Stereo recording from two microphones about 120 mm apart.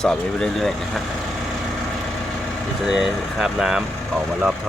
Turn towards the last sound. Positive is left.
turn(degrees=-5)  # may be behind; listen again after turning